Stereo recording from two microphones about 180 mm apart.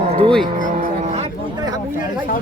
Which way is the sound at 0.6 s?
40° right (ahead or behind).